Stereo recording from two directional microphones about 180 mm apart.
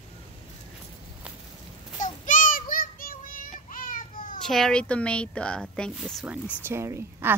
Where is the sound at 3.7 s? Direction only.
50° left (ahead or behind).